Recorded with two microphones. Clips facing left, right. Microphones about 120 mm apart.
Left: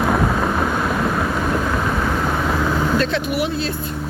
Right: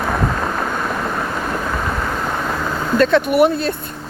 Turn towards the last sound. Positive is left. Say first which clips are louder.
# right 7 dB
turn(degrees=-55)  # may be behind; listen again after turning